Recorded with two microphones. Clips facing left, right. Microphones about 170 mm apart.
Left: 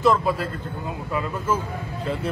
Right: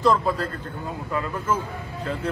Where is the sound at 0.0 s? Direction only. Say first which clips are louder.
Left 1 dB; 5° left (ahead or behind).